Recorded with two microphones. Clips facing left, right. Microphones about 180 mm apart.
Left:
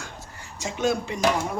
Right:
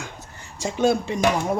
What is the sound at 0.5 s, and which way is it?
Speech, 30° right (ahead or behind).